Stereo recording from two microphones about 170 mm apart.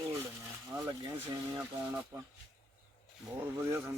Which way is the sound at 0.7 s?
20° right (ahead or behind).